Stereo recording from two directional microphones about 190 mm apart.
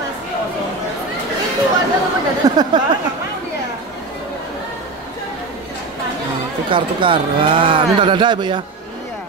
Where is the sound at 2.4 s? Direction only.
20° right (ahead or behind).